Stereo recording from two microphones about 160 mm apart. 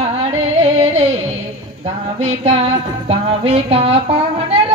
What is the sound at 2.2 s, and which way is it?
Music, 40° right (ahead or behind).